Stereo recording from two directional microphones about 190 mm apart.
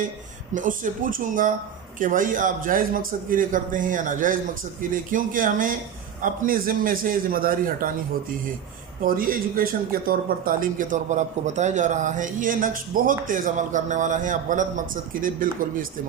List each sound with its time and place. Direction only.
0.5 s speech: 45° right (ahead or behind)
9.0 s speech: 50° right (ahead or behind)